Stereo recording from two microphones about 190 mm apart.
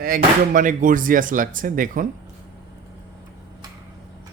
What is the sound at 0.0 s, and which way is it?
Speech, 50° right (ahead or behind).